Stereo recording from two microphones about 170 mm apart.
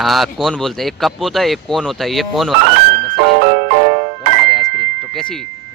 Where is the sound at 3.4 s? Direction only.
40° right (ahead or behind).